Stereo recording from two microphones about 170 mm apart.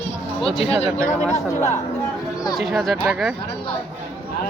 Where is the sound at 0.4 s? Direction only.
35° left (ahead or behind).